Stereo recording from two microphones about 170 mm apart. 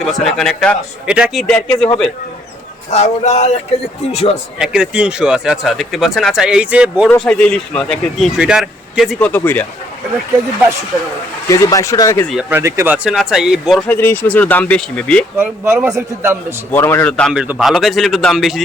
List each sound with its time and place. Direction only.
0.0 s speech: centre (ahead or behind)
2.9 s speech: 40° left (ahead or behind)
4.5 s speech: 5° right (ahead or behind)
7.1 s speech: 5° left (ahead or behind)
11.4 s speech: 20° left (ahead or behind)
12.3 s a man's voice: 5° right (ahead or behind)
13.9 s speech: 10° left (ahead or behind)
15.4 s a man's voice: 15° right (ahead or behind)
16.7 s speech: 15° left (ahead or behind)